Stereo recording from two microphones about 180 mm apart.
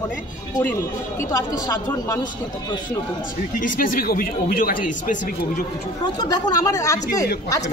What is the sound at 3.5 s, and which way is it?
Speech, 50° left (ahead or behind).